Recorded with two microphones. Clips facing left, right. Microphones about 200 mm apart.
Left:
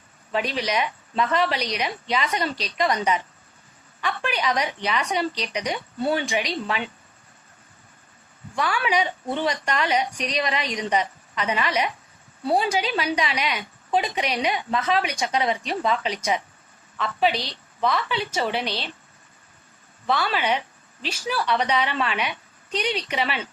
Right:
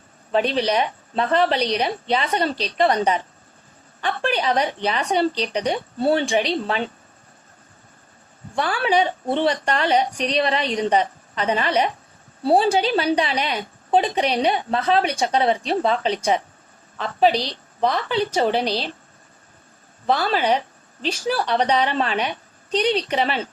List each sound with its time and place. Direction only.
0.3 s a woman's voice: 35° right (ahead or behind)
8.5 s a woman's voice: 35° right (ahead or behind)
20.1 s a woman's voice: 35° right (ahead or behind)